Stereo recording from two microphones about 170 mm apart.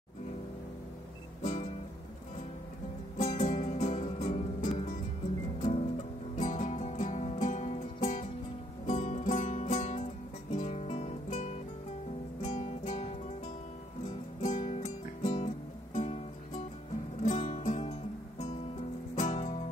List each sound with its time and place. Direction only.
1.4 s music: 50° left (ahead or behind)
3.2 s music: 45° left (ahead or behind)
5.6 s music: 35° left (ahead or behind)